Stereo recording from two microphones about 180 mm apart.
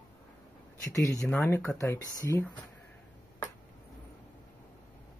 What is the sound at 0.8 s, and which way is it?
Speech, 15° left (ahead or behind).